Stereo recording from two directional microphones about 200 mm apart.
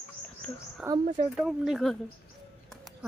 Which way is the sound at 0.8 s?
20° right (ahead or behind).